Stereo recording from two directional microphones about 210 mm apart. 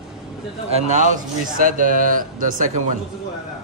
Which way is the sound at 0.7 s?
30° right (ahead or behind).